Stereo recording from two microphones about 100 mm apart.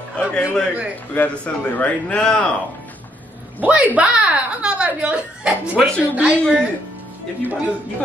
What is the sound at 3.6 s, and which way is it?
Speech, 15° right (ahead or behind).